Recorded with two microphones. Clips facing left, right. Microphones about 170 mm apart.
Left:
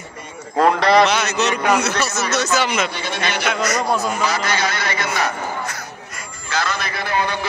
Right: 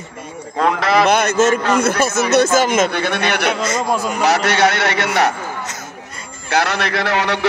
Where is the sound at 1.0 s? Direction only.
55° right (ahead or behind); by 5.3 s 70° right (ahead or behind).